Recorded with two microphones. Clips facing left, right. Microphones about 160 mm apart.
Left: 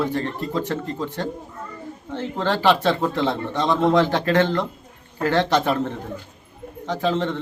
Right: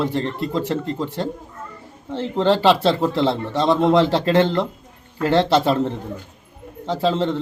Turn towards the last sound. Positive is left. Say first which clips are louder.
# right 2 dB
turn(degrees=-30)  # may be behind; listen again after turning